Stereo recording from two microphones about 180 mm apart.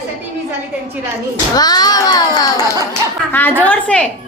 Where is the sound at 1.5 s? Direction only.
20° left (ahead or behind).